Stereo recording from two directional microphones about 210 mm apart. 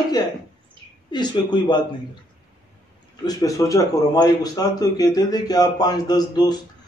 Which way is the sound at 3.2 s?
15° left (ahead or behind).